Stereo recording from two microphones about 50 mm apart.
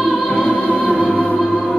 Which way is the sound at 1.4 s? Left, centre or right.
Centre.